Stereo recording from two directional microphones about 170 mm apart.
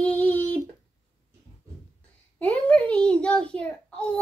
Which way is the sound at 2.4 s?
10° left (ahead or behind).